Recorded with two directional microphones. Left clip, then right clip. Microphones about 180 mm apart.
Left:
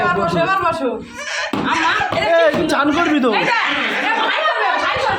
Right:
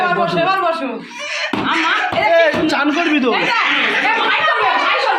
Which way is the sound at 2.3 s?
35° left (ahead or behind).